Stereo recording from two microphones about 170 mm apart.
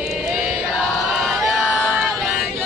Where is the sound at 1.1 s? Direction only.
Centre (ahead or behind).